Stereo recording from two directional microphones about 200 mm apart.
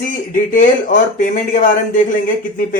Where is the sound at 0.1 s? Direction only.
40° left (ahead or behind).